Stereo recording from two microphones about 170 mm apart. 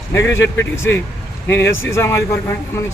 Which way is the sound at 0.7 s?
15° left (ahead or behind).